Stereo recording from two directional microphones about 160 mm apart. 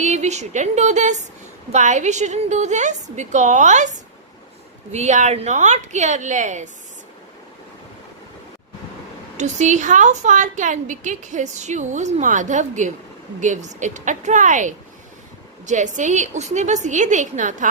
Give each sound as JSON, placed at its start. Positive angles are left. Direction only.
{"t": 0.0, "sound": "a woman's voice", "side_deg": -45}
{"t": 9.4, "sound": "a woman's voice", "side_deg": -50}